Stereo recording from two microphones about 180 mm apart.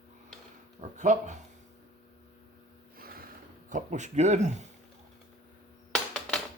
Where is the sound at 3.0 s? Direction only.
55° right (ahead or behind).